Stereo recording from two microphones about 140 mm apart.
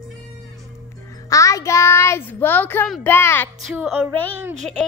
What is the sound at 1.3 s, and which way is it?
Child singing, 25° left (ahead or behind).